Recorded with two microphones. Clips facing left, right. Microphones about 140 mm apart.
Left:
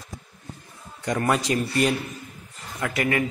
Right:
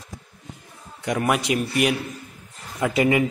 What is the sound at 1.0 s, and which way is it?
A man's voice, 10° right (ahead or behind).